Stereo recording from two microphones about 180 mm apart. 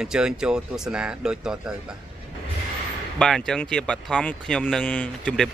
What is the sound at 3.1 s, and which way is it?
Speech, 5° left (ahead or behind).